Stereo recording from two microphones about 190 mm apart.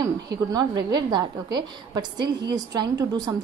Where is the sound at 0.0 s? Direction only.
20° right (ahead or behind).